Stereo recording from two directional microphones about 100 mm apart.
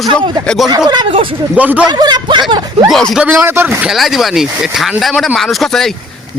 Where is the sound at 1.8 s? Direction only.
45° right (ahead or behind).